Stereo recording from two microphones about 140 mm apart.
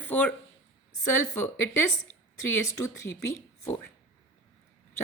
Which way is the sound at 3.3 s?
20° left (ahead or behind).